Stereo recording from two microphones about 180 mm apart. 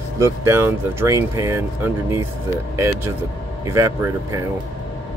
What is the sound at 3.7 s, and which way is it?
Speech, 15° right (ahead or behind).